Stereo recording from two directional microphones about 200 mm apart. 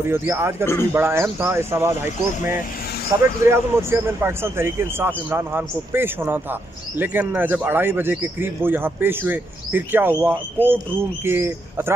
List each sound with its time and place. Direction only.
0.1 s speech: 10° right (ahead or behind)
3.1 s speech: 15° right (ahead or behind)